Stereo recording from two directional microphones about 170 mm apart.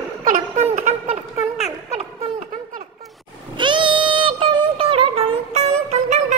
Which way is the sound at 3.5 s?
30° right (ahead or behind).